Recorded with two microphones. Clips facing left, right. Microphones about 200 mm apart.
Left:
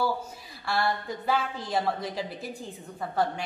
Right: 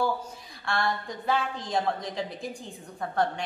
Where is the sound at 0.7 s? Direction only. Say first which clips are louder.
Left 1 dB; 5° left (ahead or behind).